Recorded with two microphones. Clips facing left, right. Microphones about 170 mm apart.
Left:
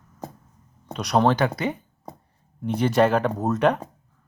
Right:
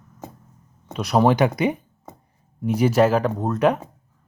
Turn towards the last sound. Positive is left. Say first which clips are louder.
# right 1 dB
turn(degrees=0)  # may be behind; listen again after turning